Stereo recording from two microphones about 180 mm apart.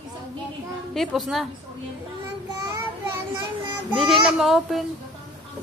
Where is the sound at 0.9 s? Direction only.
Centre (ahead or behind).